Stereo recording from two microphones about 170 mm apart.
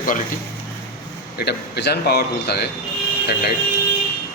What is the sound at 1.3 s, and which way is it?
Speech, 75° left (ahead or behind).